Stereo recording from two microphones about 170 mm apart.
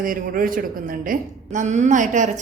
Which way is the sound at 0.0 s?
55° right (ahead or behind).